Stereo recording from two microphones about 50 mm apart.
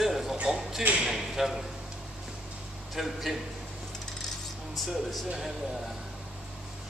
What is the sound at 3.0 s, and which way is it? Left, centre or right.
Speech, centre.